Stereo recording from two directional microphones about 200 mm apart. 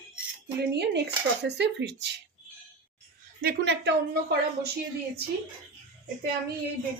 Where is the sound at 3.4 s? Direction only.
55° right (ahead or behind).